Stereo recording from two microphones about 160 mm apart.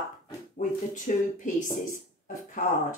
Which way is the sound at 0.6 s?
50° left (ahead or behind).